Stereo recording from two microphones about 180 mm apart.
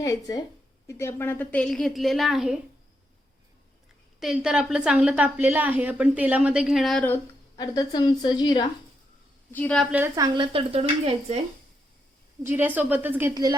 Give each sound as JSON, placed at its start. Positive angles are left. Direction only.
{"t": 0.0, "sound": "a woman's voice", "side_deg": 20}
{"t": 4.2, "sound": "a woman's voice", "side_deg": -5}
{"t": 7.5, "sound": "a woman's voice", "side_deg": 20}
{"t": 9.5, "sound": "a woman's voice", "side_deg": 10}
{"t": 10.2, "sound": "speech", "side_deg": -25}
{"t": 12.4, "sound": "a woman's voice", "side_deg": -10}
{"t": 13.3, "sound": "speech", "side_deg": -25}